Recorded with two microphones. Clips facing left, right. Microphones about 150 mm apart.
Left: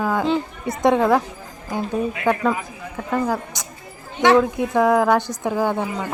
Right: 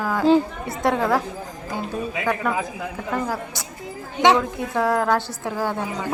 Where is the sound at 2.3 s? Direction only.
25° left (ahead or behind).